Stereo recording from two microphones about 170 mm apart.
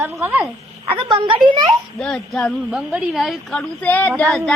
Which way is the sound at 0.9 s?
30° right (ahead or behind).